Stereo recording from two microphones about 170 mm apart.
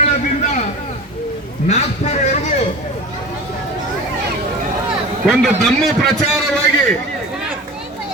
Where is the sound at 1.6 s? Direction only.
40° left (ahead or behind).